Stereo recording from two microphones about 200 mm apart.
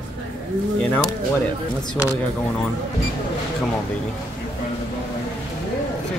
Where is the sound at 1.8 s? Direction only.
15° left (ahead or behind).